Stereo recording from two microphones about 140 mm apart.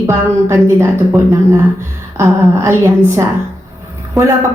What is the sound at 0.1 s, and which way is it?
Speech, 20° right (ahead or behind).